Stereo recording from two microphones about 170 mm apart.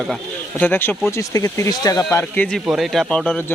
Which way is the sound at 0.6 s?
10° left (ahead or behind).